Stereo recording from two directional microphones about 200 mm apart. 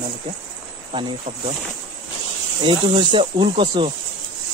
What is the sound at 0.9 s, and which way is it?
Speech, 25° right (ahead or behind).